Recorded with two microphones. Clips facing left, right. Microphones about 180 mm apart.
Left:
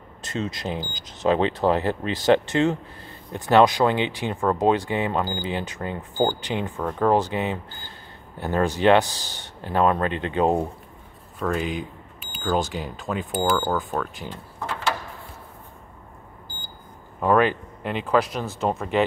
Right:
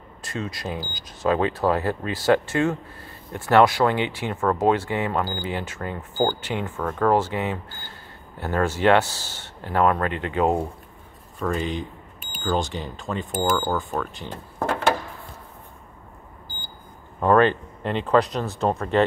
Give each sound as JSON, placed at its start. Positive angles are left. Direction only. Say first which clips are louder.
{"t": 0.2, "sound": "speech", "louder": "left 2 dB", "side_deg": 20}
{"t": 11.3, "sound": "speech", "louder": "even", "side_deg": 5}
{"t": 14.6, "sound": "a sound", "louder": "right 5 dB", "side_deg": -50}
{"t": 17.2, "sound": "speech", "louder": "right 2 dB", "side_deg": 5}